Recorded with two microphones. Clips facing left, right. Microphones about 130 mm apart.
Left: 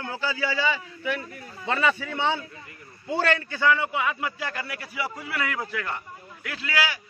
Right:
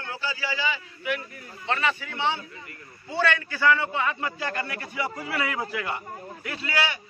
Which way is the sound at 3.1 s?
40° left (ahead or behind).